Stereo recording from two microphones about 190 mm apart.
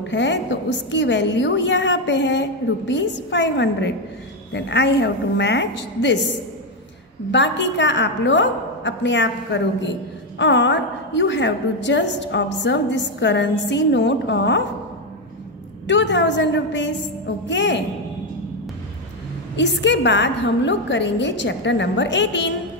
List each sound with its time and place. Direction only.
0.0 s a woman's voice: 70° left (ahead or behind)
7.2 s a woman's voice: 70° left (ahead or behind)
15.9 s a woman's voice: 70° left (ahead or behind)
19.5 s a woman's voice: 70° left (ahead or behind)